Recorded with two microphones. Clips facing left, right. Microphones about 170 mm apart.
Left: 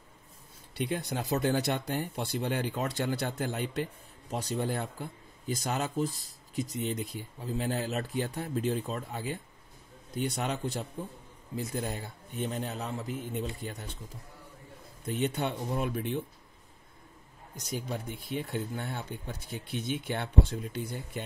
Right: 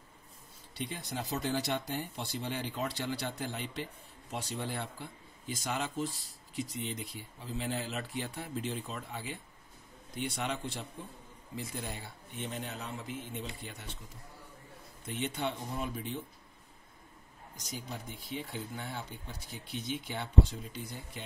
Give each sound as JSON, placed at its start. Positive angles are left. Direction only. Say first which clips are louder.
{"t": 0.7, "sound": "a man's voice", "louder": "left 6 dB", "side_deg": 60}
{"t": 15.1, "sound": "speech", "louder": "left 4 dB", "side_deg": 55}
{"t": 17.6, "sound": "speech", "louder": "left 7 dB", "side_deg": 55}